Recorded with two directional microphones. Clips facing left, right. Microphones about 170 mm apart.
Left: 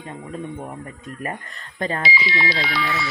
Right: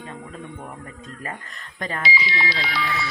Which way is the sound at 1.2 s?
30° left (ahead or behind).